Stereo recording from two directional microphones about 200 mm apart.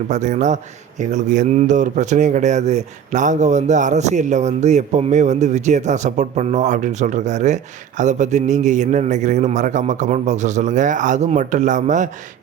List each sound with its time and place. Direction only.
0.1 s speech: 35° right (ahead or behind)